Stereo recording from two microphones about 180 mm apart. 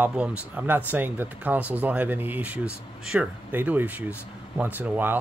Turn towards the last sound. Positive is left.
turn(degrees=-10)  # may be behind; listen again after turning